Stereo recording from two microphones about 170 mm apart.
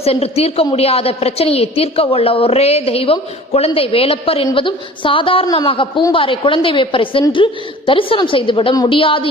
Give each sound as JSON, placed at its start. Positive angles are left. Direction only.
{"t": 0.0, "sound": "a woman's voice", "side_deg": 35}